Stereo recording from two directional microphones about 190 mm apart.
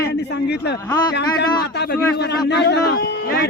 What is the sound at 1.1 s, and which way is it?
Speech, 60° left (ahead or behind).